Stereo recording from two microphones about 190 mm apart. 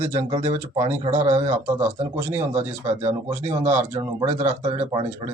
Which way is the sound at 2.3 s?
35° right (ahead or behind).